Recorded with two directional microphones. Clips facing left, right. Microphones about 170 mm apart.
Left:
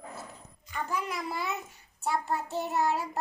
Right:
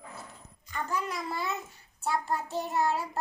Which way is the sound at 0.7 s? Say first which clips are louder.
Even; 10° left (ahead or behind).